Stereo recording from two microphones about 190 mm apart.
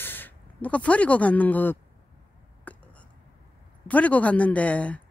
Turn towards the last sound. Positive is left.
turn(degrees=5)  # may be behind; listen again after turning